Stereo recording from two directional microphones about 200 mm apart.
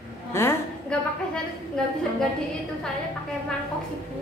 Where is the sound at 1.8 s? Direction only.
5° left (ahead or behind).